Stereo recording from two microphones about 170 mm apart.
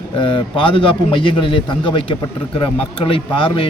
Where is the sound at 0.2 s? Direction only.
30° left (ahead or behind).